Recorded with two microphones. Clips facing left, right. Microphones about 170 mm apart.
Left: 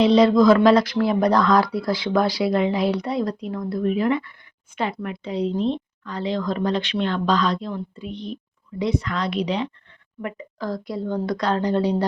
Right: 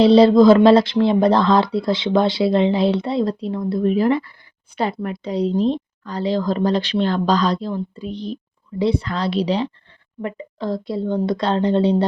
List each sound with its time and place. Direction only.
0.0 s a woman's voice: 30° right (ahead or behind)